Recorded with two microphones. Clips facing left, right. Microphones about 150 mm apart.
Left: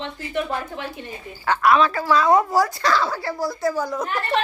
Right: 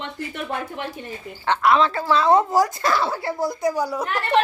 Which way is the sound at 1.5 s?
25° right (ahead or behind).